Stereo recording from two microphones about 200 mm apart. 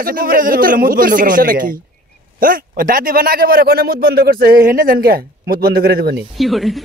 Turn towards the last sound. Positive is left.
turn(degrees=0)  # may be behind; listen again after turning